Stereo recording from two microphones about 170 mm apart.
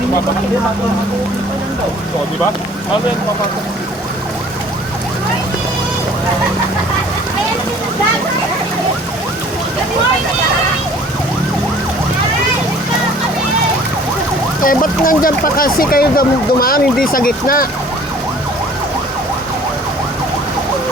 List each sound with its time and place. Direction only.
14.6 s speech: 55° left (ahead or behind)